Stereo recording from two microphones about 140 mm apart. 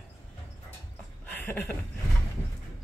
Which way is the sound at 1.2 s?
10° left (ahead or behind).